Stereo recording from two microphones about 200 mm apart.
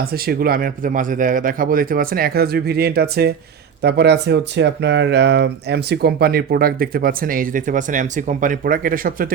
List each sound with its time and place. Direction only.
0.0 s speech: 50° right (ahead or behind)